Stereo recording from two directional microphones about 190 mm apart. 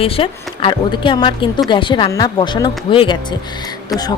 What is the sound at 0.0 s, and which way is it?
Speech, 30° left (ahead or behind).